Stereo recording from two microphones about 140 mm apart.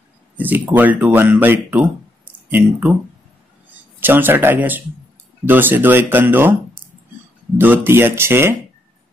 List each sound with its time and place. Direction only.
0.7 s speech: 10° right (ahead or behind)
4.0 s speech: 15° right (ahead or behind)